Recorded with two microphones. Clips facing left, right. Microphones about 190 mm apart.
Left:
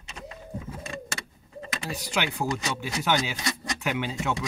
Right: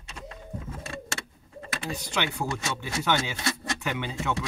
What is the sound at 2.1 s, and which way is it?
Speech, 10° left (ahead or behind).